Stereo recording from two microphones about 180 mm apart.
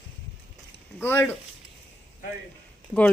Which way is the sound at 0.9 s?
10° left (ahead or behind).